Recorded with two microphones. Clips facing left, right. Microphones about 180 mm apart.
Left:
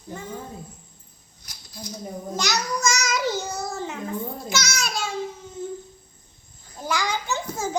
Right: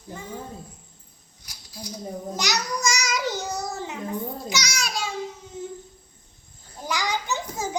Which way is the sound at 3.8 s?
15° right (ahead or behind).